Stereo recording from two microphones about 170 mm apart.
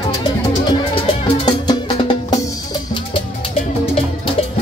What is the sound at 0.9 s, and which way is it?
Music, 25° left (ahead or behind).